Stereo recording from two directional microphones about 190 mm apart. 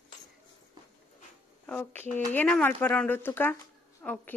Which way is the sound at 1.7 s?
10° left (ahead or behind).